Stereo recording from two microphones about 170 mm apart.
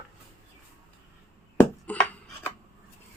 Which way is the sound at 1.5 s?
10° left (ahead or behind).